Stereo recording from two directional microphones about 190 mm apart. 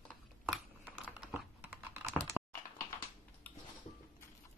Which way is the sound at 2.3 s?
5° right (ahead or behind).